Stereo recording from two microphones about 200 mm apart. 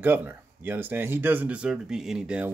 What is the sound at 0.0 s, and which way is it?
Speech, 10° right (ahead or behind).